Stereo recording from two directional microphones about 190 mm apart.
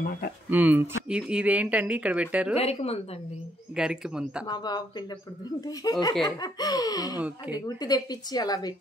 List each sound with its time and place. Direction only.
0.5 s speech: 10° right (ahead or behind)
2.5 s a woman's voice: 35° left (ahead or behind)
3.7 s speech: 5° right (ahead or behind)
4.5 s a woman's voice: 20° left (ahead or behind)
7.2 s speech: 10° right (ahead or behind)
7.5 s a woman's voice: 20° left (ahead or behind)